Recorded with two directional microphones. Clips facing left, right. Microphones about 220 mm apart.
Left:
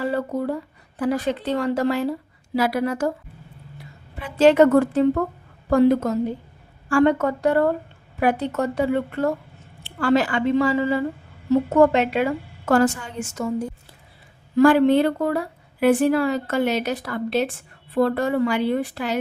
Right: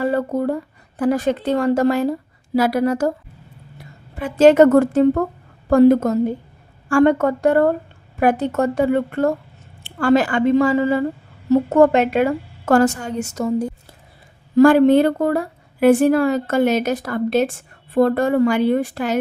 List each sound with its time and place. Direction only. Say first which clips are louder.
0.0 s a woman's voice: right 4 dB; 50° right (ahead or behind)
4.2 s a woman's voice: right 4 dB; 45° right (ahead or behind)